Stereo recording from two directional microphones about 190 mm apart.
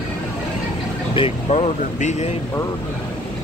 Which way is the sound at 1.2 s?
30° left (ahead or behind).